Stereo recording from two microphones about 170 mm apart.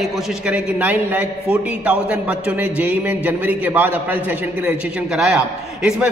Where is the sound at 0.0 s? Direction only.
5° right (ahead or behind).